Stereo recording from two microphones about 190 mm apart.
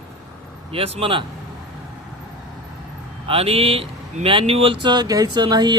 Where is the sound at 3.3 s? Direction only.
30° right (ahead or behind).